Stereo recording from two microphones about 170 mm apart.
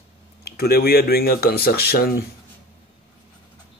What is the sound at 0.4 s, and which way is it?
Speech, 65° left (ahead or behind).